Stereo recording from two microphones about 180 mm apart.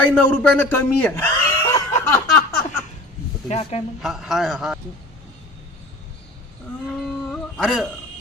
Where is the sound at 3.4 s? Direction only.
35° left (ahead or behind).